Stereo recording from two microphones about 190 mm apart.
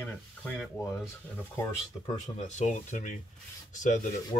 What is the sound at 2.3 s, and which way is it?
Speech, 35° left (ahead or behind).